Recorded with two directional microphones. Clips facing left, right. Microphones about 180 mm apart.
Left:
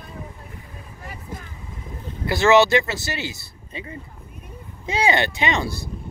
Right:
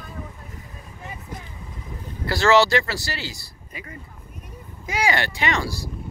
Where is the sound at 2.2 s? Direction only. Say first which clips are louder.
Left 2 dB; 20° left (ahead or behind).